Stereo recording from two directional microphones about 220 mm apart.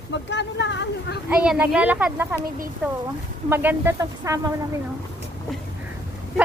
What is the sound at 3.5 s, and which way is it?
A child's voice, 10° right (ahead or behind).